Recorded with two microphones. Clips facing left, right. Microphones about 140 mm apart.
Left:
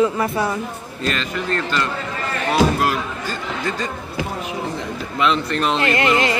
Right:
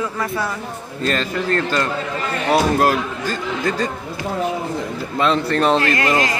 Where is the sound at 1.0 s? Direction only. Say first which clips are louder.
Right 3 dB; 40° right (ahead or behind).